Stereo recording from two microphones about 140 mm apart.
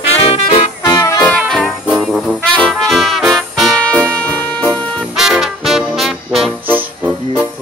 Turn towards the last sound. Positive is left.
turn(degrees=-10)  # may be behind; listen again after turning